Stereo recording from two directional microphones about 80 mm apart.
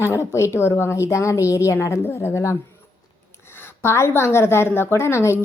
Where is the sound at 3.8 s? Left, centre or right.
Left.